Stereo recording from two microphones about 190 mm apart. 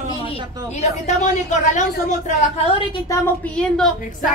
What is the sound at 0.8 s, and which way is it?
Speech, 40° left (ahead or behind).